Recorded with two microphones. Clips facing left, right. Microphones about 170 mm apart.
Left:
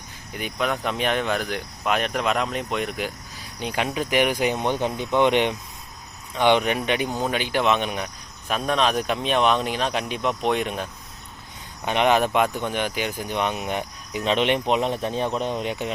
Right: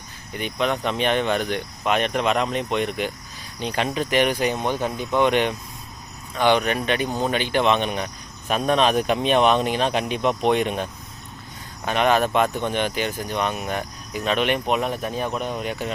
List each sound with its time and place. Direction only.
0.3 s speech: 5° left (ahead or behind)
11.9 s speech: 15° left (ahead or behind)